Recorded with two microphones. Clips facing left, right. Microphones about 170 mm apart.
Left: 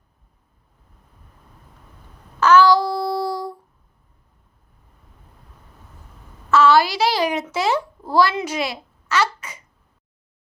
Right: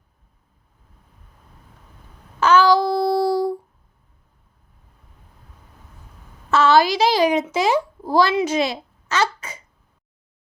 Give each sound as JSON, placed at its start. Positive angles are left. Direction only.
{"t": 2.4, "sound": "child singing", "side_deg": -25}
{"t": 6.5, "sound": "a child's voice", "side_deg": -20}